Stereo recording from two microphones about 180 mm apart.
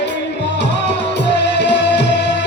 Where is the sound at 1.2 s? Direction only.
75° left (ahead or behind).